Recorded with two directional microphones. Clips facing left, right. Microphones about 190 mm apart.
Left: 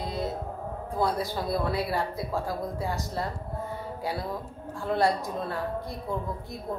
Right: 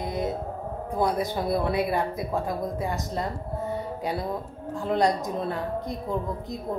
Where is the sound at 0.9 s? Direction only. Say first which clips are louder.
Right 3 dB; 20° right (ahead or behind).